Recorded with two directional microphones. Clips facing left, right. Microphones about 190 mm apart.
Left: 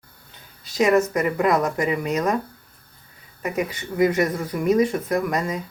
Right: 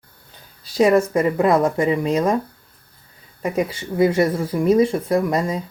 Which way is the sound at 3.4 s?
30° right (ahead or behind).